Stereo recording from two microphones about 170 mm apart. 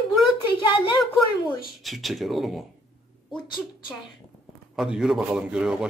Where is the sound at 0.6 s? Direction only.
30° left (ahead or behind).